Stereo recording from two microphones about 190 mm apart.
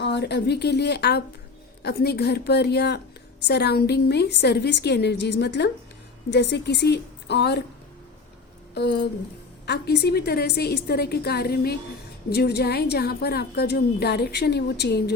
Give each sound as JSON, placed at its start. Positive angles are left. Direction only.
{"t": 0.0, "sound": "a woman's voice", "side_deg": 65}
{"t": 8.7, "sound": "a woman's voice", "side_deg": 60}